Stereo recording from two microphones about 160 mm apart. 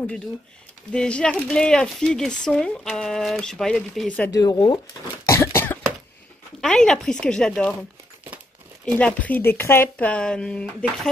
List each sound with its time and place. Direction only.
0.9 s speech: 5° left (ahead or behind)
4.3 s speech: 25° left (ahead or behind)
5.3 s cough: 15° left (ahead or behind)
6.6 s speech: 5° left (ahead or behind)
8.9 s speech: 10° left (ahead or behind)